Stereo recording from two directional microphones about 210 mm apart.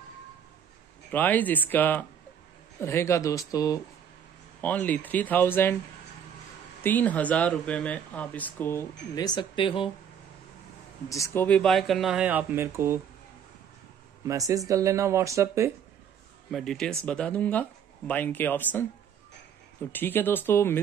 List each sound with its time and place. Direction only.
1.1 s speech: 10° left (ahead or behind)
6.8 s speech: 10° left (ahead or behind); by 9.8 s 25° left (ahead or behind)
11.1 s speech: 15° left (ahead or behind); by 13.0 s 10° right (ahead or behind)
14.2 s speech: 15° right (ahead or behind)
16.4 s speech: centre (ahead or behind)
19.9 s speech: 10° left (ahead or behind)